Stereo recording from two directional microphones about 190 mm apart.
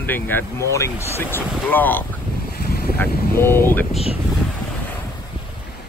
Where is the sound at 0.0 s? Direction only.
10° left (ahead or behind).